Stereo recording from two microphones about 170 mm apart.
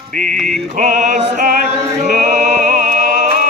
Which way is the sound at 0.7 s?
45° right (ahead or behind).